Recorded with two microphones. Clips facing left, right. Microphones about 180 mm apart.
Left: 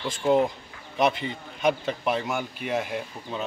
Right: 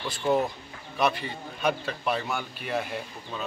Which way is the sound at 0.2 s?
15° left (ahead or behind).